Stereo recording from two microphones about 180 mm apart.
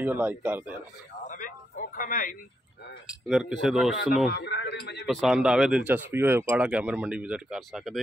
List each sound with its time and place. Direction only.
0.0 s speech: 10° right (ahead or behind)
1.3 s a sound: 50° left (ahead or behind)
3.3 s speech: 5° right (ahead or behind)
4.3 s a man's voice: 70° left (ahead or behind)
5.0 s speech: centre (ahead or behind)